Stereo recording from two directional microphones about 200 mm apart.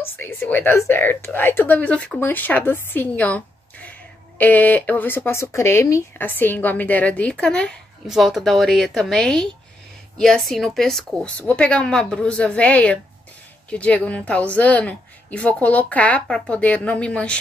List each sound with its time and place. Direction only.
0.0 s a woman's voice: 10° left (ahead or behind)